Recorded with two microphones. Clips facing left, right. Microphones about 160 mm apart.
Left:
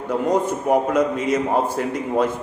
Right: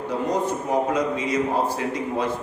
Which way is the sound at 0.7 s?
50° left (ahead or behind).